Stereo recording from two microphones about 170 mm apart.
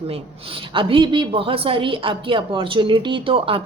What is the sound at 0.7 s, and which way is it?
A woman's voice, 30° right (ahead or behind).